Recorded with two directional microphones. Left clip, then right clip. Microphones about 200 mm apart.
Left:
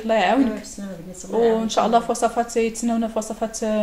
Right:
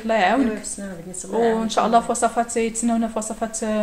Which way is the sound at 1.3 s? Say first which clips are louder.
Left 1 dB; 15° right (ahead or behind).